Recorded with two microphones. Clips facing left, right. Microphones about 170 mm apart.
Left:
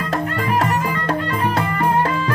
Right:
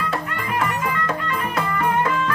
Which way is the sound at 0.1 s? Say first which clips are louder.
Left 5 dB; 35° left (ahead or behind).